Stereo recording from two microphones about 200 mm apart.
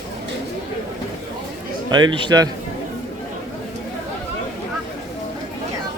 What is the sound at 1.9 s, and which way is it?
Speech, 20° right (ahead or behind).